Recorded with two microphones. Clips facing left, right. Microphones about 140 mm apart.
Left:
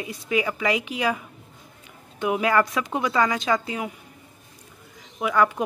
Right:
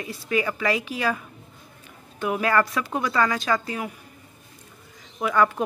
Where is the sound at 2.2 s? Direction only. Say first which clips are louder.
Left 1 dB; 15° left (ahead or behind).